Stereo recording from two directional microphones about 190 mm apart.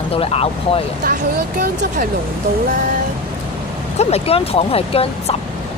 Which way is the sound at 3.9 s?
30° left (ahead or behind).